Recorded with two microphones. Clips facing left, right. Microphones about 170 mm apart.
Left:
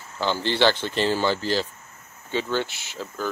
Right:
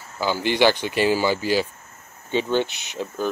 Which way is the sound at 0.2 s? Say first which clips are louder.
Right 2 dB; 10° right (ahead or behind).